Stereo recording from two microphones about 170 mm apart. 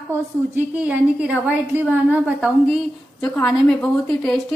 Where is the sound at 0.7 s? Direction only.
5° right (ahead or behind).